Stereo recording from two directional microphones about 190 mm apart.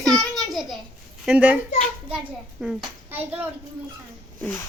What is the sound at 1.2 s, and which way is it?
Speech, 5° right (ahead or behind).